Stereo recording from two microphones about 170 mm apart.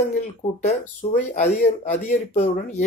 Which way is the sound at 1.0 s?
40° left (ahead or behind).